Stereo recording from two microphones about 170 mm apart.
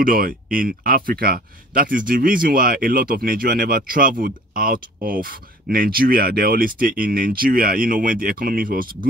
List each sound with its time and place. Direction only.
0.0 s speech: 55° right (ahead or behind)